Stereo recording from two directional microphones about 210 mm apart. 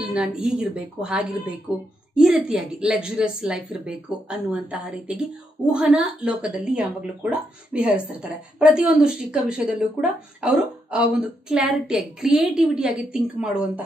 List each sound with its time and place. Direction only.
0.0 s a woman's voice: 5° right (ahead or behind)